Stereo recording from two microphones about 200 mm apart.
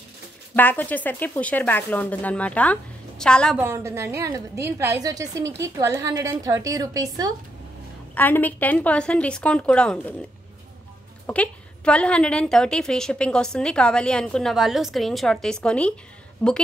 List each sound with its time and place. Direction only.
0.6 s speech: 10° left (ahead or behind)
3.5 s a woman's voice: 15° right (ahead or behind)
8.1 s speech: 10° left (ahead or behind)
11.2 s a woman's voice: 5° left (ahead or behind)